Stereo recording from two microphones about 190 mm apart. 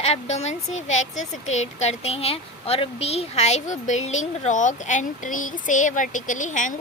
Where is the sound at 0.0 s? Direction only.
35° left (ahead or behind).